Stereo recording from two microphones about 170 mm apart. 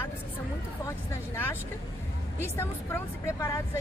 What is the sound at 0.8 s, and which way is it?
A woman's voice, 15° left (ahead or behind).